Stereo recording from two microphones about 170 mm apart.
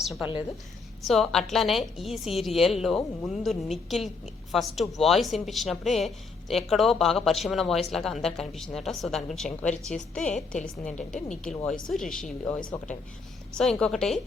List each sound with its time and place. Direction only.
0.0 s a woman's voice: centre (ahead or behind)
12.5 s a woman's voice: 25° left (ahead or behind)
13.5 s speech: 5° left (ahead or behind)